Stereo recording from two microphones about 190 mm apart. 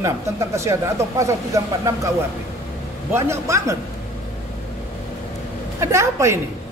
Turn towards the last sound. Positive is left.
turn(degrees=-15)  # may be behind; listen again after turning